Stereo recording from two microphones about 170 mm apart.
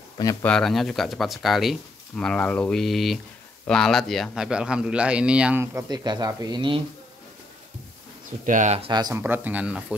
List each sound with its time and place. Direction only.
0.4 s a man's voice: 5° left (ahead or behind); by 6.8 s 25° right (ahead or behind)
8.5 s speech: 45° right (ahead or behind)
8.9 s speech: 25° right (ahead or behind)
9.2 s speech: 10° right (ahead or behind)